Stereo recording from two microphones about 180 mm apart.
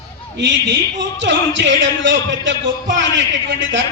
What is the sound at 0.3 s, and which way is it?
A man's voice, 80° right.